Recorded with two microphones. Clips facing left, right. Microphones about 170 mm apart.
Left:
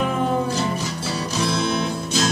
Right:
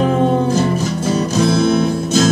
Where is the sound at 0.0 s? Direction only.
30° right (ahead or behind).